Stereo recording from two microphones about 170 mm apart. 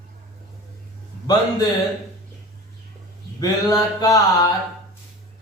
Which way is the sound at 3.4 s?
20° left (ahead or behind).